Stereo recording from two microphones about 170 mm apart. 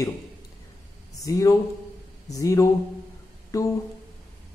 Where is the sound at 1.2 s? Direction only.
20° left (ahead or behind).